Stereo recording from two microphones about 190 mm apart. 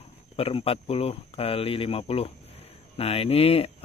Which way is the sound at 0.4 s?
30° left (ahead or behind).